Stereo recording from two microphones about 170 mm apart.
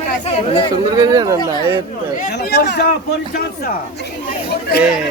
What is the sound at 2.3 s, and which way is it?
Speech, 75° left (ahead or behind).